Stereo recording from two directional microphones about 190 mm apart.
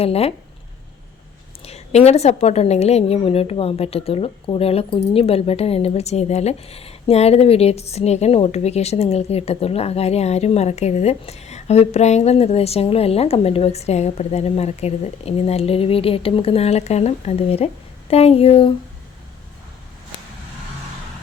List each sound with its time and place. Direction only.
0.0 s a woman's voice: 30° left (ahead or behind)
1.6 s a woman's voice: 35° left (ahead or behind)